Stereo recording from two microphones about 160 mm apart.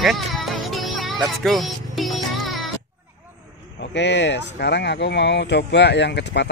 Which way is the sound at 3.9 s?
90° left.